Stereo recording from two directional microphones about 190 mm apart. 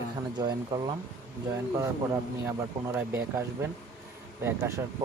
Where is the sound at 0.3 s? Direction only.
20° right (ahead or behind).